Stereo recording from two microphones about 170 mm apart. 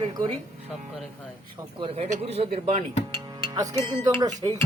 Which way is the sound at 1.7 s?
35° right (ahead or behind).